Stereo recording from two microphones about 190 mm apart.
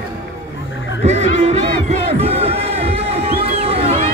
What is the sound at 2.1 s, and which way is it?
Crowd, 30° right (ahead or behind).